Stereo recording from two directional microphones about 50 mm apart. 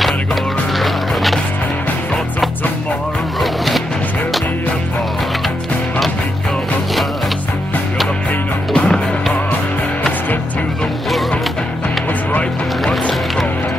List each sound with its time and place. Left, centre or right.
0.7 s music: centre
3.3 s music: centre
8.7 s music: left
12.8 s music: centre